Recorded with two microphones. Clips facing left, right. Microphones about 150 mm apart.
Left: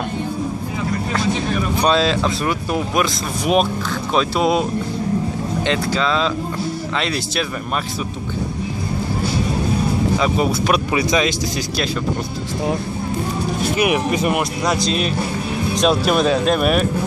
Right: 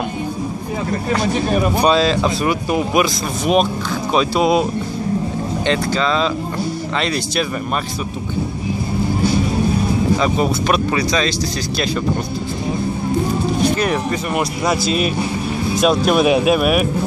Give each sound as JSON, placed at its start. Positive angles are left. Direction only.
{"t": 1.8, "sound": "speech", "side_deg": -5}
{"t": 5.7, "sound": "speech", "side_deg": 0}
{"t": 10.1, "sound": "speech", "side_deg": 0}
{"t": 11.0, "sound": "speech", "side_deg": 20}
{"t": 13.6, "sound": "speech", "side_deg": 10}
{"t": 14.3, "sound": "speech", "side_deg": -5}
{"t": 16.3, "sound": "speech", "side_deg": -15}
{"t": 16.5, "sound": "speech", "side_deg": -5}